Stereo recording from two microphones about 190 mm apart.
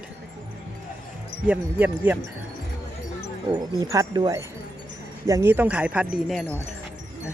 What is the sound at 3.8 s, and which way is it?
Speech, 15° right (ahead or behind).